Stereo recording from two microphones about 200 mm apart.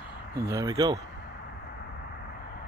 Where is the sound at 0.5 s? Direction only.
20° right (ahead or behind).